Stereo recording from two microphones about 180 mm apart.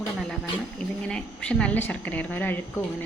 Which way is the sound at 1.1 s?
5° left (ahead or behind).